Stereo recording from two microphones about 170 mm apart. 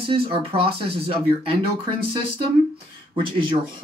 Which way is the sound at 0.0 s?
35° right (ahead or behind).